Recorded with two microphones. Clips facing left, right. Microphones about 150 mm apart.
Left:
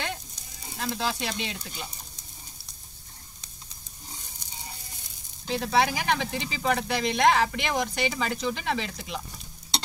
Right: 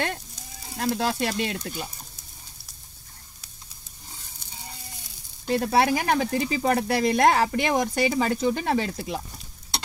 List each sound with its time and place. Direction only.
0.7 s speech: 50° right (ahead or behind)
5.6 s speech: 45° right (ahead or behind)